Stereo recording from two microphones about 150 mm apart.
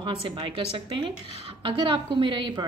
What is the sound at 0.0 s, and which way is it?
A woman's voice, 30° right (ahead or behind).